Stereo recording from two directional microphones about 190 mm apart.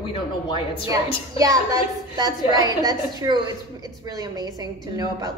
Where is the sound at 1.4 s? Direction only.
20° right (ahead or behind).